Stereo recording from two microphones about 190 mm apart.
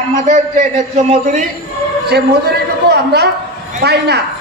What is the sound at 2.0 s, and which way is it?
A woman's voice, 60° right (ahead or behind).